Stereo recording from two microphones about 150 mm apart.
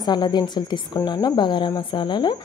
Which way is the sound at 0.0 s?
30° left (ahead or behind).